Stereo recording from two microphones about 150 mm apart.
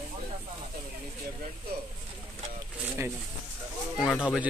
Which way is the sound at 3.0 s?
20° right (ahead or behind).